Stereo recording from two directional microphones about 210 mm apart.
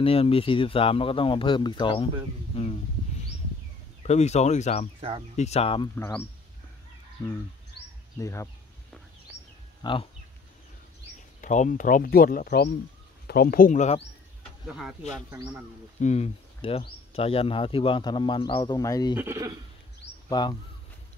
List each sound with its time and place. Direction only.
0.0 s speech: 25° left (ahead or behind)
4.0 s speech: 30° left (ahead or behind)
5.9 s speech: 10° left (ahead or behind)
9.8 s speech: 25° left (ahead or behind)
11.4 s speech: 35° left (ahead or behind)
14.7 s speech: centre (ahead or behind)
16.0 s speech: 30° left (ahead or behind)
19.1 s speech: 15° right (ahead or behind)
20.2 s speech: 20° left (ahead or behind)